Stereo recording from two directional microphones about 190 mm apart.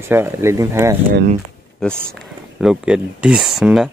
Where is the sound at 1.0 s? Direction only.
50° right (ahead or behind).